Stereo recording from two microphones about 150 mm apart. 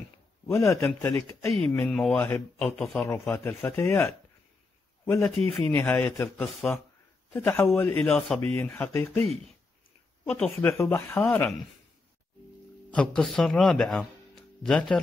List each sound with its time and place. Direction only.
0.5 s speech: 20° left (ahead or behind)
1.5 s speech: 5° left (ahead or behind)
3.1 s speech: 15° left (ahead or behind)
6.3 s speech: centre (ahead or behind)
7.3 s speech: 15° left (ahead or behind)
10.4 s speech: 15° left (ahead or behind)
12.9 s speech: 5° left (ahead or behind)